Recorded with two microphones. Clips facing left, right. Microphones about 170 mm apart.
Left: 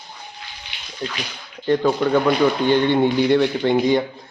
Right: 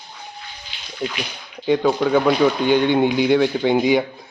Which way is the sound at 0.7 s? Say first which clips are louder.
Even; 65° left (ahead or behind).